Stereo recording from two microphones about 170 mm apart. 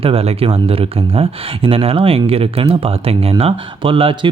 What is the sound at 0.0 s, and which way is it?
Speech, 35° right (ahead or behind).